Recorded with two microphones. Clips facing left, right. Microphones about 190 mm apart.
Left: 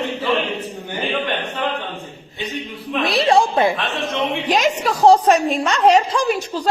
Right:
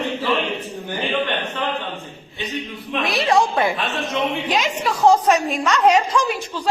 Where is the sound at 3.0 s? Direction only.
30° left (ahead or behind).